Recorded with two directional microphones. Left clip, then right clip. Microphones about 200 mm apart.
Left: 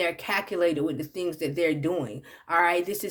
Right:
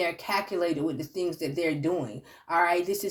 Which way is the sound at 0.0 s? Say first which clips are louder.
Left 1 dB; 25° left (ahead or behind).